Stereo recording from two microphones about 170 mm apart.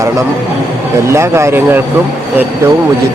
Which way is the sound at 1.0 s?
15° right (ahead or behind).